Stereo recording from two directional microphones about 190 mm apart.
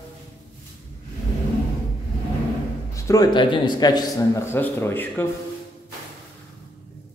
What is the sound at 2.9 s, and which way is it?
A man's voice, 15° left (ahead or behind).